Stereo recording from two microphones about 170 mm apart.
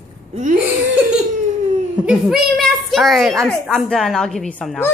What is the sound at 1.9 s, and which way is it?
A woman's voice, 5° right (ahead or behind).